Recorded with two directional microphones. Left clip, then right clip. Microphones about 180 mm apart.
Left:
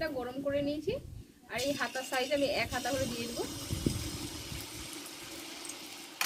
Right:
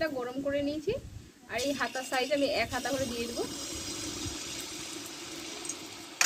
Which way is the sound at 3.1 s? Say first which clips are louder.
Right 3 dB; 10° left (ahead or behind).